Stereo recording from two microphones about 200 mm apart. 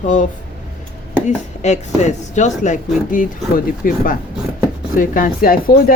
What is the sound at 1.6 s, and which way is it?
A woman's voice, 35° left (ahead or behind).